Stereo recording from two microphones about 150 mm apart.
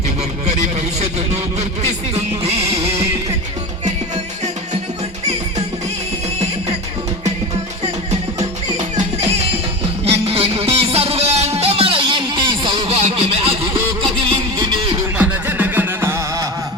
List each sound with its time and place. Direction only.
0.9 s speech: 45° right (ahead or behind)
2.4 s music: 40° right (ahead or behind)
8.1 s music: 50° right (ahead or behind)
14.6 s beatboxing: 30° right (ahead or behind)
15.2 s music: 10° right (ahead or behind)